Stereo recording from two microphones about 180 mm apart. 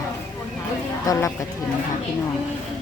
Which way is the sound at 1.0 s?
20° left (ahead or behind).